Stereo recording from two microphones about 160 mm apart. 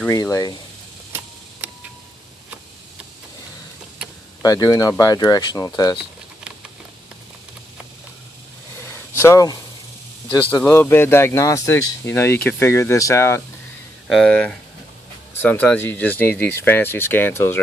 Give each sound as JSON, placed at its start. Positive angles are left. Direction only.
{"t": 0.1, "sound": "speech", "side_deg": 20}
{"t": 1.6, "sound": "a sound", "side_deg": -10}
{"t": 4.4, "sound": "speech", "side_deg": 25}
{"t": 9.2, "sound": "speech", "side_deg": 20}
{"t": 14.0, "sound": "speech", "side_deg": 0}